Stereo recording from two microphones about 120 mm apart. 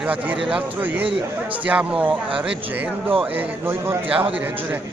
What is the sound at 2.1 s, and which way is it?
Speech, 45° right (ahead or behind).